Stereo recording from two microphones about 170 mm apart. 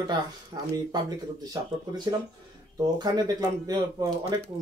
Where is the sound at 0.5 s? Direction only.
25° right (ahead or behind).